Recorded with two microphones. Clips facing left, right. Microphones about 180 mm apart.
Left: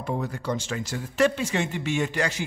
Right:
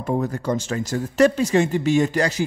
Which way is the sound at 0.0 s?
45° right (ahead or behind).